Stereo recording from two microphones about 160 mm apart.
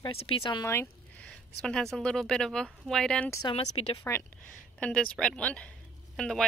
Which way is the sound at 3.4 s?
40° left (ahead or behind).